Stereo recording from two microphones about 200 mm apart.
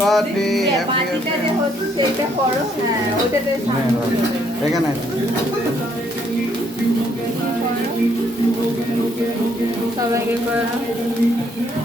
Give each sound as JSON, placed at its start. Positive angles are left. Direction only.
{"t": 0.0, "sound": "music", "side_deg": 0}